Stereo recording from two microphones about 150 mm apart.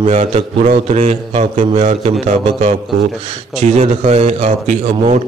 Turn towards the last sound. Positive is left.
turn(degrees=-50)  # may be behind; listen again after turning